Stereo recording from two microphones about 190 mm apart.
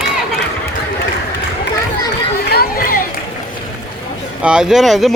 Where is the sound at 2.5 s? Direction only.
50° left (ahead or behind).